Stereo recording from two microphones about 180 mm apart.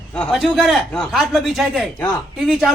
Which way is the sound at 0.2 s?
Centre (ahead or behind).